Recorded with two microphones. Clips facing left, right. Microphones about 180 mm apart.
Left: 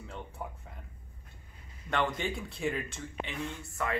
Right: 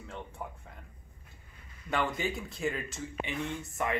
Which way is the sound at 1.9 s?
5° right (ahead or behind).